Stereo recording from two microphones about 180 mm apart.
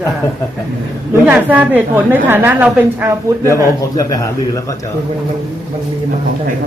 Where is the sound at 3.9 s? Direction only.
20° left (ahead or behind).